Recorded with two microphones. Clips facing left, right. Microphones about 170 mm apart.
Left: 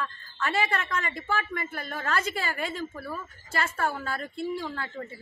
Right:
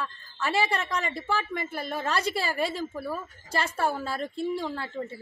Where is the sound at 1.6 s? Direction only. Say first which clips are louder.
Right 3 dB; 35° right (ahead or behind).